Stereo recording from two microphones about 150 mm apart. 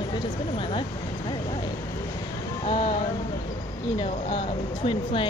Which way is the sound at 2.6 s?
50° left (ahead or behind).